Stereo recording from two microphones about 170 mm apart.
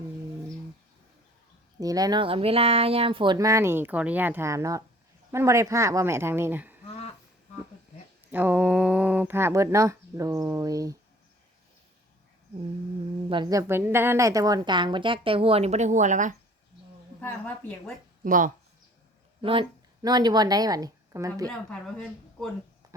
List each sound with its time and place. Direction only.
1.8 s speech: 20° right (ahead or behind)
3.3 s speech: 20° right (ahead or behind)
8.3 s speech: 10° right (ahead or behind)
13.2 s a woman's voice: 30° right (ahead or behind); by 16.3 s 45° right (ahead or behind)
17.2 s speech: 10° left (ahead or behind)
18.3 s speech: 50° right (ahead or behind)
19.4 s a woman's voice: 30° right (ahead or behind)
21.4 s speech: 5° left (ahead or behind)
22.8 s a sound: 20° right (ahead or behind)